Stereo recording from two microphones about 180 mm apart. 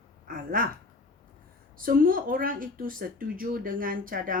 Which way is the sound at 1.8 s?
50° right (ahead or behind).